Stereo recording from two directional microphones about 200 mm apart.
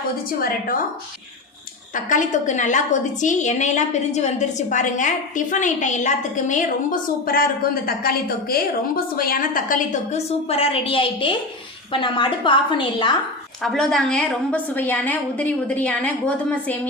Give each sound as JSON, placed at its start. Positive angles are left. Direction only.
{"t": 0.3, "sound": "a woman's voice", "side_deg": 45}
{"t": 2.0, "sound": "a woman's voice", "side_deg": 40}
{"t": 13.6, "sound": "a woman's voice", "side_deg": 0}